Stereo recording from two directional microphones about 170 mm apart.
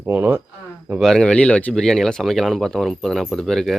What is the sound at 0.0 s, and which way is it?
Speech, 10° right (ahead or behind).